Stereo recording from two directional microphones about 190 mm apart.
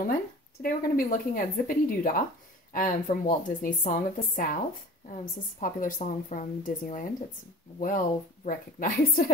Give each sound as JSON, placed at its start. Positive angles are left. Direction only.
{"t": 0.6, "sound": "a woman's voice", "side_deg": 50}